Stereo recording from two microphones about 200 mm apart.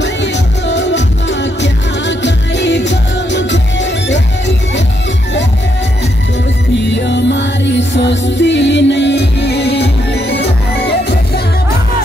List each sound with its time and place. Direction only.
0.0 s music: 60° left (ahead or behind)
6.8 s music: 60° left (ahead or behind)